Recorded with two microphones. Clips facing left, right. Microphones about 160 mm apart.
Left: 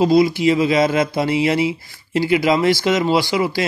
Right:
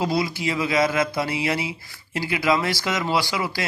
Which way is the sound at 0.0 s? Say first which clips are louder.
Left 10 dB; 20° left (ahead or behind).